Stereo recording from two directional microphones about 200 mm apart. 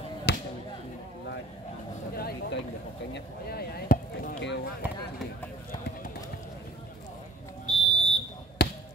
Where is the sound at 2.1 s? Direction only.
50° left (ahead or behind).